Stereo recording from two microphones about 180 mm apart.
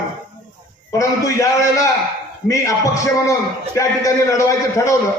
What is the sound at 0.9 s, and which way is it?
A man's voice, 15° left (ahead or behind).